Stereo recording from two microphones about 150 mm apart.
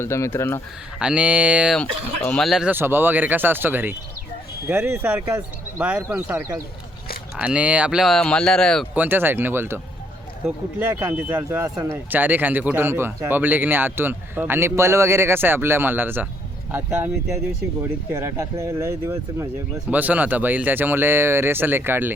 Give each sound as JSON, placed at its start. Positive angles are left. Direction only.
{"t": 0.0, "sound": "speech", "side_deg": 15}
{"t": 0.9, "sound": "speech", "side_deg": -5}
{"t": 1.8, "sound": "speech", "side_deg": 10}
{"t": 2.5, "sound": "speech", "side_deg": -5}
{"t": 9.0, "sound": "speech", "side_deg": -15}